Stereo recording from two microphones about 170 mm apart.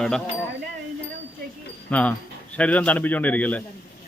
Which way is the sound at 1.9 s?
10° left (ahead or behind).